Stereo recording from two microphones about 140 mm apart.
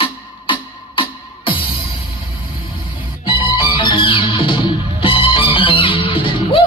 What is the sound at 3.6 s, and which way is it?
Music, 35° left (ahead or behind).